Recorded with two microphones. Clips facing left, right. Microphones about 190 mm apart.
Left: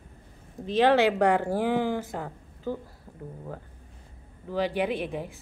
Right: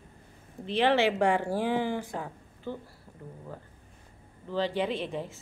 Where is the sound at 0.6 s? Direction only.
40° left (ahead or behind).